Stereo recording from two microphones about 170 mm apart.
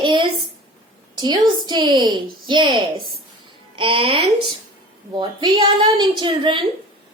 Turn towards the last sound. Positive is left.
turn(degrees=-30)  # may be behind; listen again after turning